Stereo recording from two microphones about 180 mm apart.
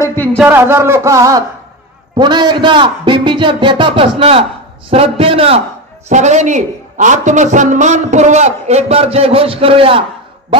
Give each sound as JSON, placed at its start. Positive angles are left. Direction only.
{"t": 0.0, "sound": "a man's voice", "side_deg": 10}
{"t": 0.4, "sound": "a man's voice", "side_deg": -10}